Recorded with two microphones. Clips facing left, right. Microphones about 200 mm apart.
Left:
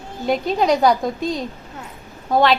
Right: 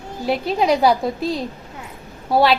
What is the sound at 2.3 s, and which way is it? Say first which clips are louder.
Speech: even; 10° right (ahead or behind).